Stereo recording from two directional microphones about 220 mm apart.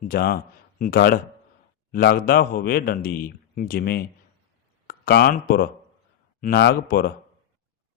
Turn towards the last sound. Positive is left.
turn(degrees=45)  # may be behind; listen again after turning